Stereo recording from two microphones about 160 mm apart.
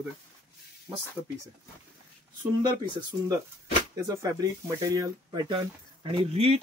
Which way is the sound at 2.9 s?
25° right (ahead or behind).